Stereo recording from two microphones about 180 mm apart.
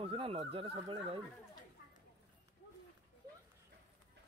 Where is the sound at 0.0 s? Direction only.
30° right (ahead or behind).